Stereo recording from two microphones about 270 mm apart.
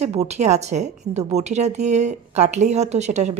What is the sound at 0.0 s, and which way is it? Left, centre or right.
A woman's voice, right.